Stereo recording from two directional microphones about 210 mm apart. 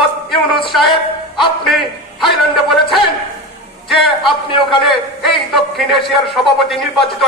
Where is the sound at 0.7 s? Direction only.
Centre (ahead or behind).